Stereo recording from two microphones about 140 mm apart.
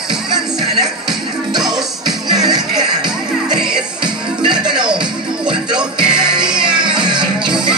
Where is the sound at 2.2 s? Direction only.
30° right (ahead or behind).